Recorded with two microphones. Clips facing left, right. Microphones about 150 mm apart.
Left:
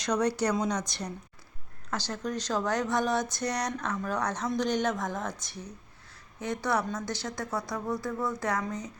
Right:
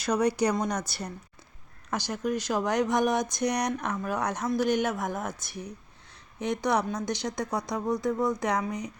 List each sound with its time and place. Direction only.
0.0 s speech: 10° right (ahead or behind)